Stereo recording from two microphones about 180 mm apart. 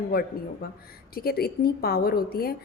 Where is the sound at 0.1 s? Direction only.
55° left (ahead or behind).